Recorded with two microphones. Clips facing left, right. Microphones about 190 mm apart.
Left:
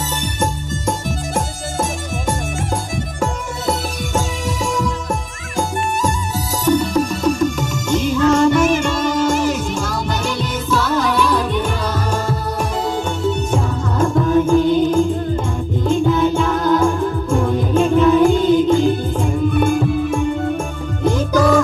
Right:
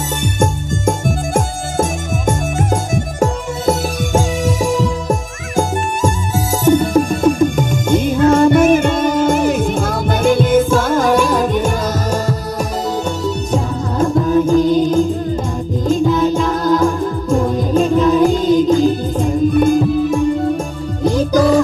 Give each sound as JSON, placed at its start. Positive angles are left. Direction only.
{"t": 0.2, "sound": "music", "side_deg": -50}